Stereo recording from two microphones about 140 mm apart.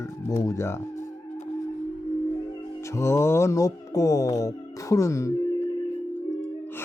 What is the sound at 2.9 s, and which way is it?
Speech, 20° left (ahead or behind).